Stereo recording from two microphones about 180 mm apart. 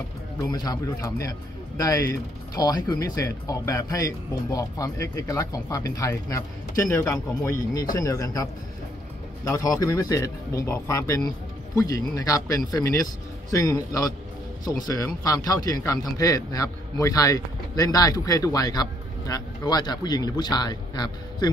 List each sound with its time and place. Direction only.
0.5 s a man's voice: 20° left (ahead or behind)